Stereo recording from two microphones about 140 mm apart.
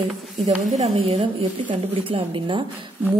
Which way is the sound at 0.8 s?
45° right (ahead or behind).